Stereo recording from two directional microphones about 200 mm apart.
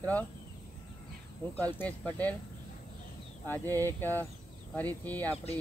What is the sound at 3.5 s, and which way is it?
Speech, 10° left (ahead or behind).